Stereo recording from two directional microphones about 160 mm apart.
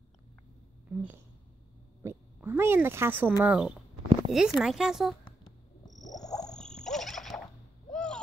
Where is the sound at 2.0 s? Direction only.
15° right (ahead or behind).